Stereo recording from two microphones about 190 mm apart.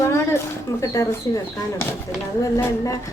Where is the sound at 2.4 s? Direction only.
15° left (ahead or behind).